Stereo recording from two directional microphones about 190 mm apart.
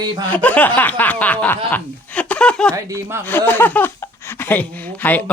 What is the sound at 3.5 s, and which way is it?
Speech, 10° left (ahead or behind).